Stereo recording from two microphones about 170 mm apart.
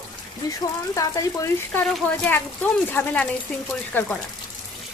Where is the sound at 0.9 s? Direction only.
20° left (ahead or behind).